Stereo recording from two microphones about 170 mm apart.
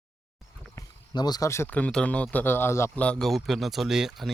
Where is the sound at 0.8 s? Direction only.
25° left (ahead or behind).